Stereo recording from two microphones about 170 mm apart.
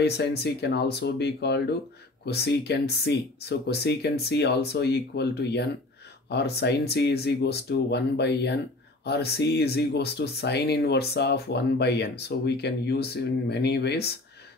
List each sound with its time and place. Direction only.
0.0 s speech: 70° left (ahead or behind)